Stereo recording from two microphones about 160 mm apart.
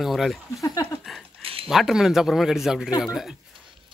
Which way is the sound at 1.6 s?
Centre (ahead or behind).